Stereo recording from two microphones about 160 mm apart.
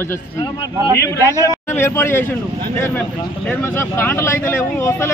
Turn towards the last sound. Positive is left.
turn(degrees=15)  # may be behind; listen again after turning